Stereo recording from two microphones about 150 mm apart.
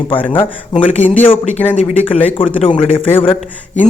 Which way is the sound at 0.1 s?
10° left (ahead or behind).